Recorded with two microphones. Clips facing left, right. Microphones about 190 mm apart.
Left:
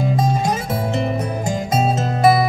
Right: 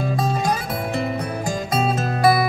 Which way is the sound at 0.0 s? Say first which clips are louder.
Left 3 dB; 20° left (ahead or behind).